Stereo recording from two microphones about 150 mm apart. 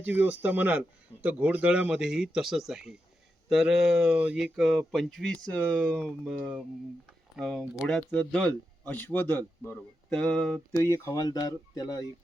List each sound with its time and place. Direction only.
0.0 s speech: 10° right (ahead or behind)
7.6 s speech: 10° right (ahead or behind)
8.1 s speech: 10° left (ahead or behind)
10.8 s speech: 15° left (ahead or behind)